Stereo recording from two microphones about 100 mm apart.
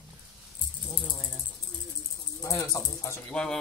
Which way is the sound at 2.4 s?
35° left (ahead or behind).